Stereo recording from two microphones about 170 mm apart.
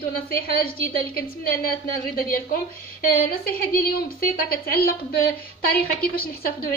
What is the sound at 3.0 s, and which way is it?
A woman's voice, 60° left (ahead or behind).